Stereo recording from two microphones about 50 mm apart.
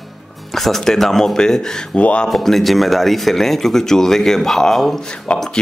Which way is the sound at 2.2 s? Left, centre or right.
Centre.